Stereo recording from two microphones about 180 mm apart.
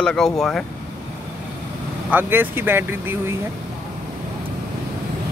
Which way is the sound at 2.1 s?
10° right (ahead or behind).